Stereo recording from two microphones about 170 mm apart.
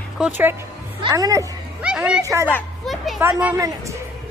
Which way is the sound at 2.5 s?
Centre (ahead or behind).